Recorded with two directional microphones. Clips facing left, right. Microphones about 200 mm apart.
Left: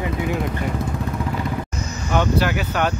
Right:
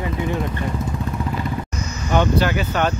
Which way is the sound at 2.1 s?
5° left (ahead or behind).